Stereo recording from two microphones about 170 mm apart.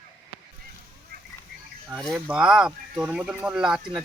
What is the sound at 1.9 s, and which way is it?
Speech, centre (ahead or behind).